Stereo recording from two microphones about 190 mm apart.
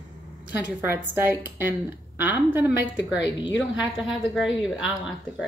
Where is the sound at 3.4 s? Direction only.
70° left (ahead or behind).